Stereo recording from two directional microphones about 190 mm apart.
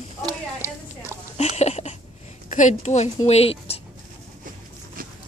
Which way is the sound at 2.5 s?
40° left (ahead or behind).